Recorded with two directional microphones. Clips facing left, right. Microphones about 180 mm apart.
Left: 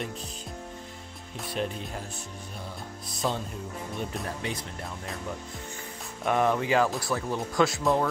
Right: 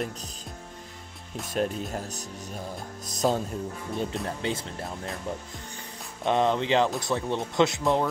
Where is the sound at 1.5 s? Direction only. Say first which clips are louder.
Right 4 dB; 45° right (ahead or behind).